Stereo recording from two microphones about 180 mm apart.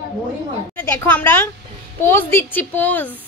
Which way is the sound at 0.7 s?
10° left (ahead or behind).